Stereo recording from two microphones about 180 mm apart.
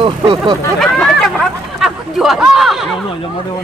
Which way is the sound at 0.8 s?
Centre (ahead or behind).